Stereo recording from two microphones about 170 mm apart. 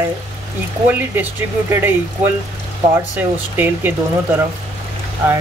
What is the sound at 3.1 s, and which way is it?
Speech, 10° right (ahead or behind).